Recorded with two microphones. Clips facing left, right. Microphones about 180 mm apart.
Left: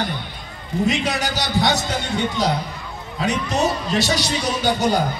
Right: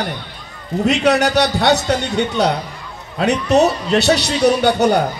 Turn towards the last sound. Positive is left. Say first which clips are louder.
# right 5 dB
turn(degrees=-65)  # may be behind; listen again after turning